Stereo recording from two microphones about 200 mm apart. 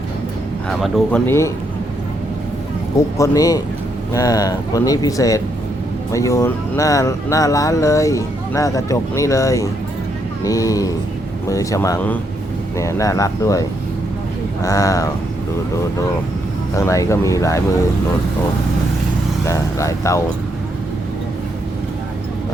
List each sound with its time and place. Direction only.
0.7 s speech: centre (ahead or behind)
1.3 s speech: 15° left (ahead or behind)
3.2 s speech: 15° left (ahead or behind)
16.7 s speech: 15° left (ahead or behind)
19.5 s speech: 15° left (ahead or behind)